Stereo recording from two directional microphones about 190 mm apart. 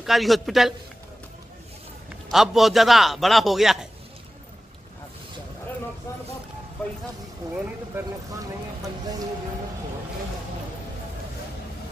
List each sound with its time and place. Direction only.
0.0 s a man's voice: centre (ahead or behind)
2.3 s a man's voice: centre (ahead or behind)
7.5 s speech: 15° right (ahead or behind)